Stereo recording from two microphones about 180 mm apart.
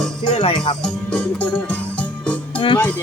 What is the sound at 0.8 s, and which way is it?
Music, 5° left (ahead or behind).